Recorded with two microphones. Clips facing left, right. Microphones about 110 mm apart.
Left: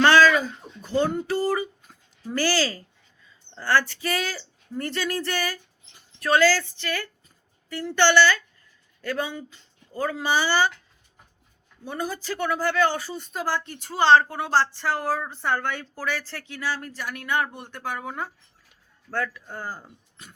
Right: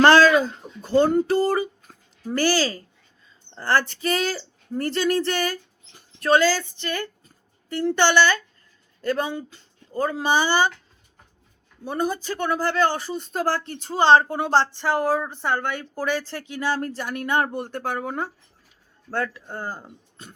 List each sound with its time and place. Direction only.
0.0 s a sound: 35° right (ahead or behind)
1.3 s speech: 30° right (ahead or behind)
2.4 s speech: 20° right (ahead or behind)
4.0 s speech: 25° right (ahead or behind)
10.0 s speech: 25° right (ahead or behind)
11.9 s speech: 25° right (ahead or behind)
13.3 s speech: 40° right (ahead or behind)
13.7 s speech: 25° right (ahead or behind)
16.7 s speech: 30° right (ahead or behind)
19.1 s speech: 25° right (ahead or behind)